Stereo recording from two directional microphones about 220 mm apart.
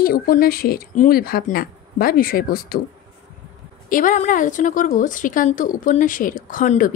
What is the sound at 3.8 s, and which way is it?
Speech, 35° left (ahead or behind).